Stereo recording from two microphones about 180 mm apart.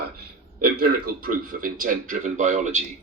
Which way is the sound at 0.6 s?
50° right (ahead or behind).